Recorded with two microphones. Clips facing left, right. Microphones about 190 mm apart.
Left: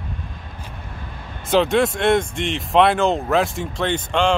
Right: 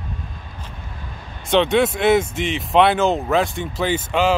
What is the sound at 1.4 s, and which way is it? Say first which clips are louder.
Speech: even; centre (ahead or behind).